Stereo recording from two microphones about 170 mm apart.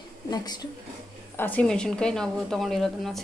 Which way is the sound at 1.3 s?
10° left (ahead or behind).